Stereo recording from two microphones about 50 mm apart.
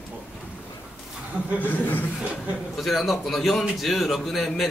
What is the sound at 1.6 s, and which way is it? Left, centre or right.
Speech, left.